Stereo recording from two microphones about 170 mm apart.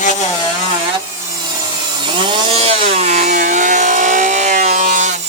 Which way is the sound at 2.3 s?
35° right (ahead or behind).